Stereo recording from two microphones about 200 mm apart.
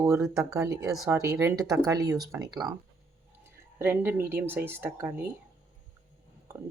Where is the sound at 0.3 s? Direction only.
15° right (ahead or behind).